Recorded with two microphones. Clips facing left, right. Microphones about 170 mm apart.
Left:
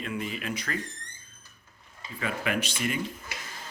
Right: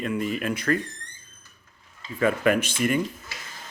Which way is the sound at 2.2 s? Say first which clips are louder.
Right 9 dB; 50° right (ahead or behind).